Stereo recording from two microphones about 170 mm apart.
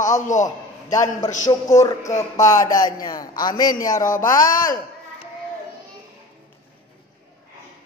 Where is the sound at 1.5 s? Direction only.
20° left (ahead or behind).